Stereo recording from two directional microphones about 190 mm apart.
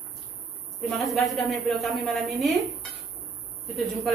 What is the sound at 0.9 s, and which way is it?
A woman's voice, centre (ahead or behind).